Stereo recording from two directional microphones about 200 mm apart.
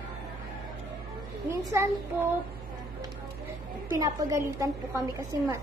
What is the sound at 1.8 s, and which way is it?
Speech, 15° right (ahead or behind).